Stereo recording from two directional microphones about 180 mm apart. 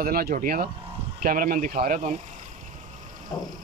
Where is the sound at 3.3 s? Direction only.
25° left (ahead or behind).